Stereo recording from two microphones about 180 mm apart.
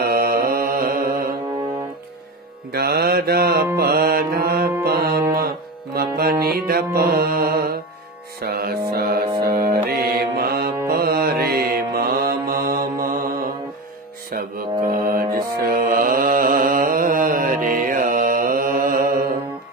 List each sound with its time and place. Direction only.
0.0 s mantra: 55° right (ahead or behind)
2.7 s mantra: 60° right (ahead or behind)
3.7 s music: 55° right (ahead or behind)
9.8 s mantra: 60° right (ahead or behind)